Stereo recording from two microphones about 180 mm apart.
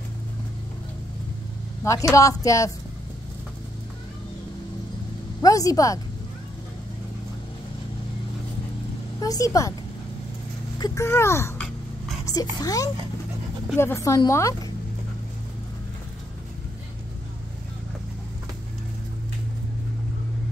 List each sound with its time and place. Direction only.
1.9 s speech: 15° left (ahead or behind)
5.4 s a woman's voice: 20° left (ahead or behind)
9.2 s speech: 20° left (ahead or behind)
10.8 s speech: 15° left (ahead or behind)